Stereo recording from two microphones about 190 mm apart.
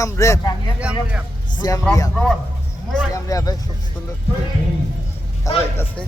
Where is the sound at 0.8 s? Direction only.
5° right (ahead or behind).